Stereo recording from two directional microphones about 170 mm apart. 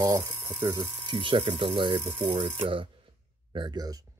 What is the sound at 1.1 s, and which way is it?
Speech, 30° right (ahead or behind).